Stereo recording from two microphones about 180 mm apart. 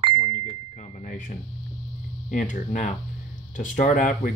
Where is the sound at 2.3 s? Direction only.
45° left (ahead or behind).